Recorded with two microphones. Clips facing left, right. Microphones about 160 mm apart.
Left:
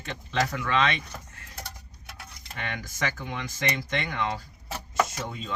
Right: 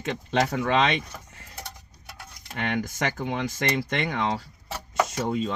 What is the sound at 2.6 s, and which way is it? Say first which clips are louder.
Speech: right 5 dB; 65° right (ahead or behind).